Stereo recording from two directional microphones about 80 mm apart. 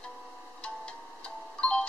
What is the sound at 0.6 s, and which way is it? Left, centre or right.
Music, centre.